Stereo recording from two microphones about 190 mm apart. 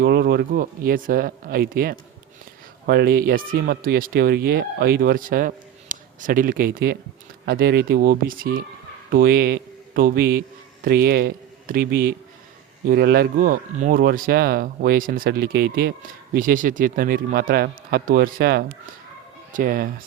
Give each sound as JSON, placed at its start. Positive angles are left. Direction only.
{"t": 0.0, "sound": "a man's voice", "side_deg": -55}